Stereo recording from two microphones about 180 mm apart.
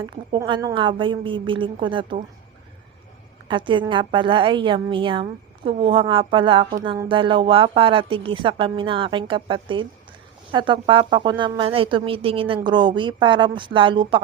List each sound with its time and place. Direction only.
0.0 s a woman's voice: 25° right (ahead or behind)
3.5 s a woman's voice: 25° right (ahead or behind)